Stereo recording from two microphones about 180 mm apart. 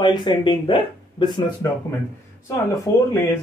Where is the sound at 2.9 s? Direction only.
20° left (ahead or behind).